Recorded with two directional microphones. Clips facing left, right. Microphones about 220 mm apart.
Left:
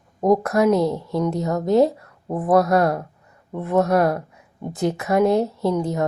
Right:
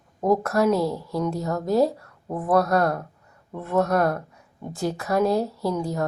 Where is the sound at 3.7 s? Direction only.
15° left (ahead or behind).